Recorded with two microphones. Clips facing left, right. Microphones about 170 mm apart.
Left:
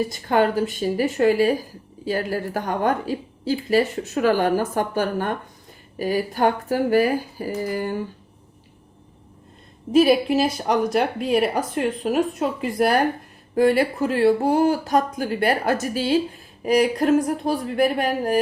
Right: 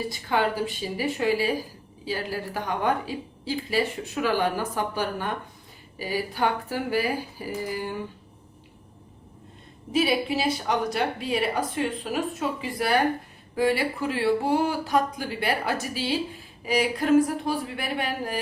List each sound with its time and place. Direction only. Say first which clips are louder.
0.1 s a woman's voice: left 6 dB; 45° left (ahead or behind)
9.9 s a woman's voice: left 8 dB; 50° left (ahead or behind)